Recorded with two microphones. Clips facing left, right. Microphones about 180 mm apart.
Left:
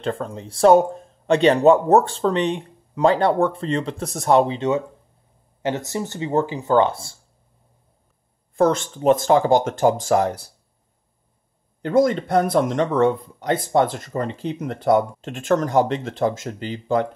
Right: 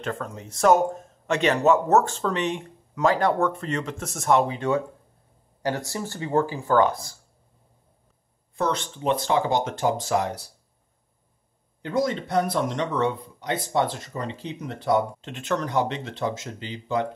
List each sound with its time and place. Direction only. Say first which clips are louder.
0.0 s speech: left 5 dB; 30° left (ahead or behind)
4.6 s speech: left 3 dB; 20° left (ahead or behind)
8.5 s speech: left 8 dB; 45° left (ahead or behind)
11.8 s speech: left 7 dB; 50° left (ahead or behind)